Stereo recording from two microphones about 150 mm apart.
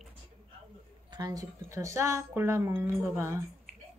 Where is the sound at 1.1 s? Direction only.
25° right (ahead or behind).